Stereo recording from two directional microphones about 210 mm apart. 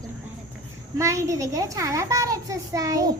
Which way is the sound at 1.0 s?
15° right (ahead or behind).